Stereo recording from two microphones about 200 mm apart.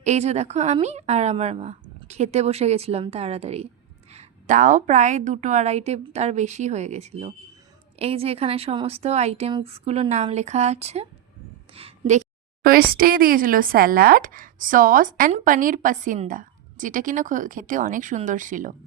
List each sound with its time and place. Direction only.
0.0 s a woman's voice: 35° right (ahead or behind)
12.6 s speech: 45° right (ahead or behind)